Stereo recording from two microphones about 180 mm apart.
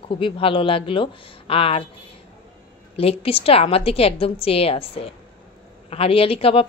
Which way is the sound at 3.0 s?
30° left (ahead or behind).